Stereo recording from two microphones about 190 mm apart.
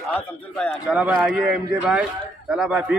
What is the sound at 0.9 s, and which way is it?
A man's voice, 5° right (ahead or behind).